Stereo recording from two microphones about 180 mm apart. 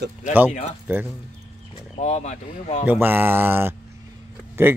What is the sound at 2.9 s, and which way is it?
Speech, 10° right (ahead or behind).